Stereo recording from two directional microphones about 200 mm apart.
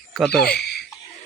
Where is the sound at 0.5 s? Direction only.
55° left (ahead or behind).